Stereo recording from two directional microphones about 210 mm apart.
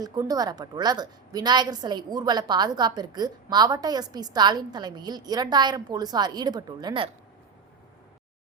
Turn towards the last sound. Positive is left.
turn(degrees=-20)  # may be behind; listen again after turning